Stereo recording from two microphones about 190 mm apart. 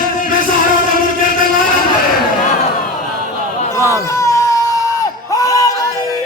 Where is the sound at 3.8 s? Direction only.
15° left (ahead or behind).